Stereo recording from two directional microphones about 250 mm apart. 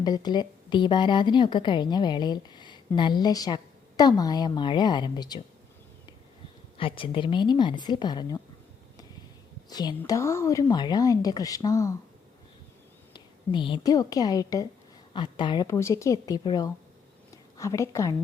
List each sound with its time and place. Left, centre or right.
0.0 s a woman's voice: centre
6.7 s a woman's voice: left
9.6 s a woman's voice: centre
13.1 s a woman's voice: centre
17.3 s a sound: centre